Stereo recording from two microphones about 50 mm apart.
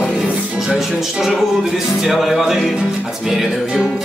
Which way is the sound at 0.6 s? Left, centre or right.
Centre.